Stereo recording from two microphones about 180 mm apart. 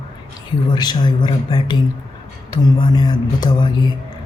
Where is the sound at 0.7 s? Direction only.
25° left (ahead or behind).